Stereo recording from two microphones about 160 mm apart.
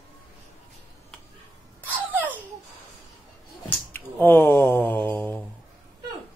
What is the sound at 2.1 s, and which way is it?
Laughter, 10° right (ahead or behind).